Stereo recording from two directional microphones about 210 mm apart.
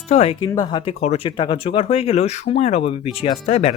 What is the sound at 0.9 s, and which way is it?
Speech, 30° left (ahead or behind).